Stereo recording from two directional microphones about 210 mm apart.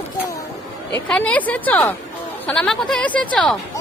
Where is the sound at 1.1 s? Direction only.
5° left (ahead or behind).